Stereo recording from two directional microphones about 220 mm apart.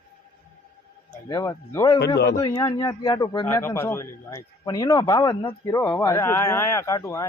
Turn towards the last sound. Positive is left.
turn(degrees=15)  # may be behind; listen again after turning